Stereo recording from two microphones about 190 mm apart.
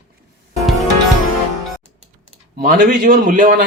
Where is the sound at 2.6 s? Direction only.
45° right (ahead or behind).